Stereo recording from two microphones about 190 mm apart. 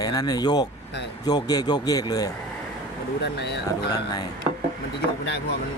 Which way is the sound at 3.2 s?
65° left (ahead or behind).